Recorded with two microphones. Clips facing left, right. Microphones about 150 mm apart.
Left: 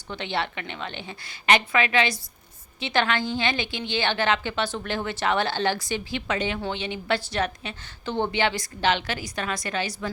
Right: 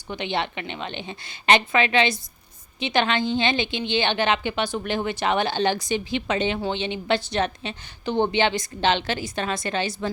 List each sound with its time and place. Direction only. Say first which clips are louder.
0.1 s a woman's voice: right 2 dB; 15° right (ahead or behind)